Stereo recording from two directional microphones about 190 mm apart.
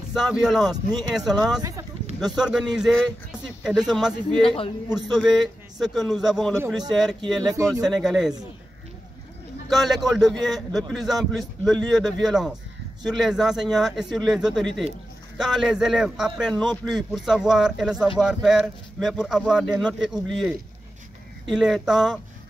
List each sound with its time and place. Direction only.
0.1 s a man's voice: centre (ahead or behind)
1.6 s a sound: 15° right (ahead or behind)
2.1 s a man's voice: centre (ahead or behind)
7.4 s speech: 20° right (ahead or behind)
7.8 s a man's voice: centre (ahead or behind)
9.7 s a man's voice: centre (ahead or behind)